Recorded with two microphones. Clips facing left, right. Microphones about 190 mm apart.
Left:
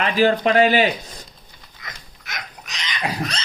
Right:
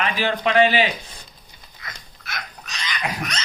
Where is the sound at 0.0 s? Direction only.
40° left (ahead or behind).